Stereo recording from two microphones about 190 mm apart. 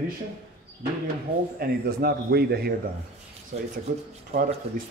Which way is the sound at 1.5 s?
55° right (ahead or behind).